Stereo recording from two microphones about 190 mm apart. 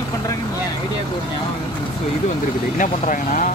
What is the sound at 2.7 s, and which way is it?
Speech, 45° left (ahead or behind).